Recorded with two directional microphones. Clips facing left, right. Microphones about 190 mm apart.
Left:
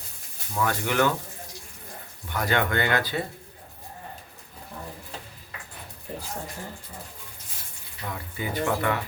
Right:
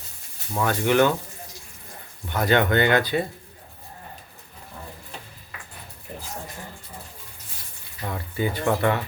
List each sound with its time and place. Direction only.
0.5 s speech: 25° right (ahead or behind)
2.3 s speech: 25° right (ahead or behind)
8.1 s speech: 30° right (ahead or behind)